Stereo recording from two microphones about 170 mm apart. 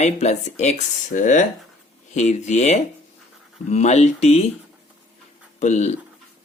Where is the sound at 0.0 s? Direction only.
40° left (ahead or behind).